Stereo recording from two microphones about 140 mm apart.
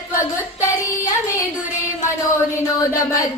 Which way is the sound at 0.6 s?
20° left (ahead or behind).